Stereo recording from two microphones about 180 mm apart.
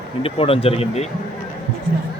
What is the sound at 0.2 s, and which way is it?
Speech, 30° left (ahead or behind).